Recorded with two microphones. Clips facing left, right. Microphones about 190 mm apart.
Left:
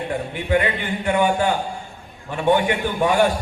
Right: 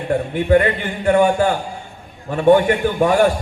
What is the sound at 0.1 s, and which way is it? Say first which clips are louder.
A man's voice: right 8 dB; 45° right (ahead or behind).